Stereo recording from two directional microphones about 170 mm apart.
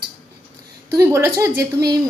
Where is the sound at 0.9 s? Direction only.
15° right (ahead or behind).